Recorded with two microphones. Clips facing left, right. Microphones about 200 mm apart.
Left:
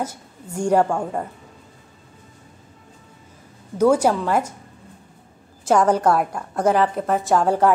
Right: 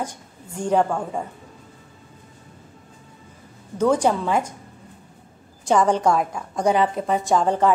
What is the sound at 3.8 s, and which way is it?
Speech, 5° left (ahead or behind).